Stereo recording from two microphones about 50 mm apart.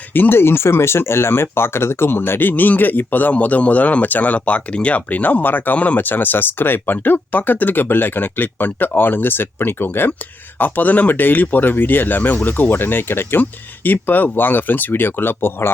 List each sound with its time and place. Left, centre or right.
0.1 s speech: left
6.0 s speech: left
10.6 s speech: left